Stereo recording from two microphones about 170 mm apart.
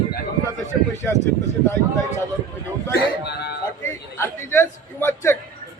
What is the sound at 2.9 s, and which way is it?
Speech, 75° left (ahead or behind).